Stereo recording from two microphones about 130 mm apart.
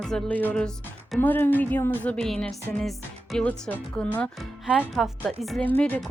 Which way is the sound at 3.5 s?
10° left (ahead or behind).